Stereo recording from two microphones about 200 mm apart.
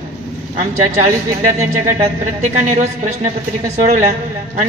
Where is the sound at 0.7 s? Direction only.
35° right (ahead or behind).